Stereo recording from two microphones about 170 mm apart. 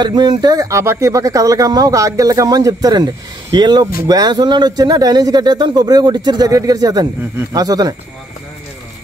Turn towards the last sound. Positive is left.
turn(degrees=-20)  # may be behind; listen again after turning